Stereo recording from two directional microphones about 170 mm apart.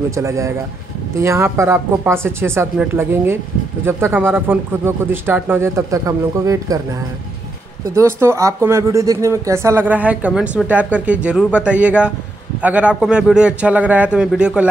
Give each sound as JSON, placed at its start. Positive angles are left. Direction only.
{"t": 0.1, "sound": "speech", "side_deg": -20}
{"t": 7.9, "sound": "speech", "side_deg": -15}